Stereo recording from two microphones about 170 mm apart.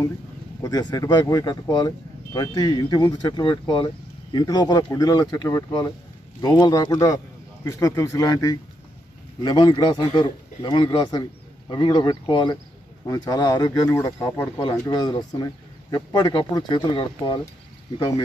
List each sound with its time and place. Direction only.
0.6 s speech: 20° left (ahead or behind)